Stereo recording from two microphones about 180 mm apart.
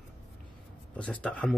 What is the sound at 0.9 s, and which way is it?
Speech, 5° left (ahead or behind).